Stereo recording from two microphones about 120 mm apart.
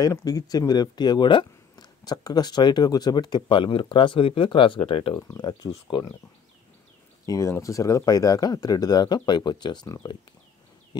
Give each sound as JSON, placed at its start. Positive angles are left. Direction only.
{"t": 0.0, "sound": "speech", "side_deg": 30}
{"t": 7.2, "sound": "speech", "side_deg": 25}